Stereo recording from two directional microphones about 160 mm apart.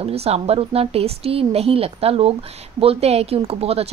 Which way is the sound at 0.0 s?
40° right (ahead or behind).